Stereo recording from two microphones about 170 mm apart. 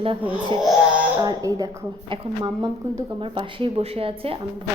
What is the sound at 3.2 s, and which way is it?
Speech, 30° right (ahead or behind).